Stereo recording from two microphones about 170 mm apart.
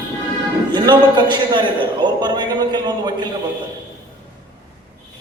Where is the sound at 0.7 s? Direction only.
25° right (ahead or behind).